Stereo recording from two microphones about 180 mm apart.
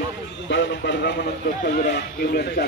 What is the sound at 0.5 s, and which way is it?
Speech, 80° left.